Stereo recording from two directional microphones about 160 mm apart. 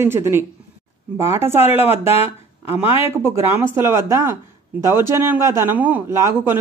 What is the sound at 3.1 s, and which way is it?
Speech, 15° right (ahead or behind).